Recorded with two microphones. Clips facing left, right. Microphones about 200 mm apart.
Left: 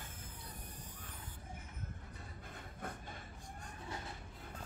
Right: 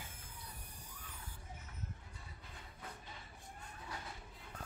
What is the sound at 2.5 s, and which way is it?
Music, 50° left (ahead or behind).